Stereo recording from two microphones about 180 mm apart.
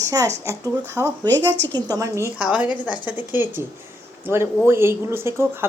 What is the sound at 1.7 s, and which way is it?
Speech, 20° right (ahead or behind).